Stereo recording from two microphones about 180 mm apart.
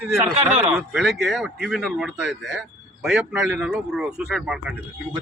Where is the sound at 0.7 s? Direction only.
Centre (ahead or behind).